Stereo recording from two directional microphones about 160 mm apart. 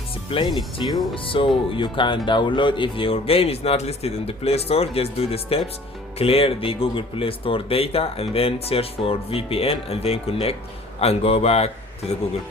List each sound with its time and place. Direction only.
0.3 s speech: 35° left (ahead or behind)